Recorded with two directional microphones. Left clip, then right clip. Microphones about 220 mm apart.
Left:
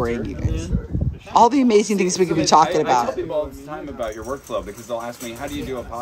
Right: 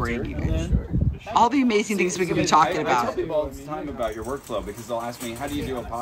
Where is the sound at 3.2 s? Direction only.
Centre (ahead or behind).